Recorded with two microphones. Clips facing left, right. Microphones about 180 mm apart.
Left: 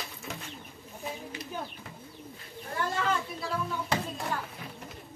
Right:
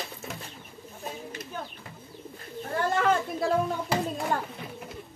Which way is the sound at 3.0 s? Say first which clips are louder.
Right 6 dB; 50° right (ahead or behind).